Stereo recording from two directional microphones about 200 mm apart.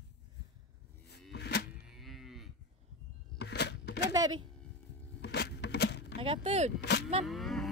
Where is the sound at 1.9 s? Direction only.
Centre (ahead or behind).